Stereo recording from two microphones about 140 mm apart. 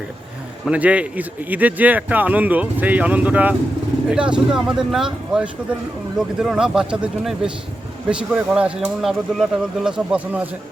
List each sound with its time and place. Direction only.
0.7 s speech: 10° right (ahead or behind)